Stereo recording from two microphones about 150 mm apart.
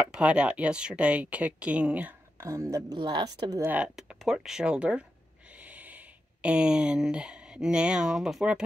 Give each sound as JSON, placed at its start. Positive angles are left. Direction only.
{"t": 0.0, "sound": "a woman's voice", "side_deg": -5}
{"t": 3.6, "sound": "speech", "side_deg": -10}